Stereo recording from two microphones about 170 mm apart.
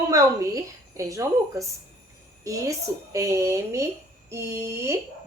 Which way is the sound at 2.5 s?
20° right (ahead or behind).